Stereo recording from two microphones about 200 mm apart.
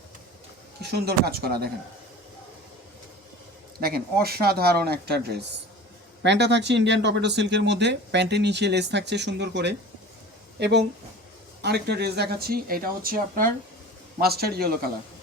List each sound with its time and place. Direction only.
0.9 s speech: 55° right (ahead or behind)
3.8 s speech: 50° right (ahead or behind)